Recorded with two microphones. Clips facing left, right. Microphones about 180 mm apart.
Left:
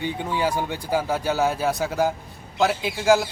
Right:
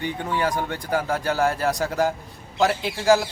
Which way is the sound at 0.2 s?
10° left (ahead or behind).